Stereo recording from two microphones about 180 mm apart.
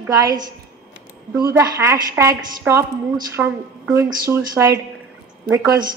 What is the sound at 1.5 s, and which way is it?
A woman's voice, 15° right (ahead or behind).